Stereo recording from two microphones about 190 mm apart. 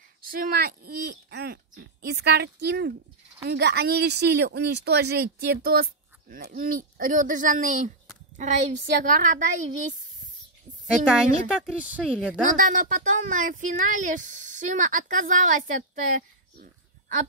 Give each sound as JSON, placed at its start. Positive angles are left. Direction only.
{"t": 0.3, "sound": "a woman's voice", "side_deg": -50}
{"t": 11.1, "sound": "a woman's voice", "side_deg": -5}
{"t": 12.0, "sound": "a woman's voice", "side_deg": 5}
{"t": 12.5, "sound": "speech", "side_deg": -45}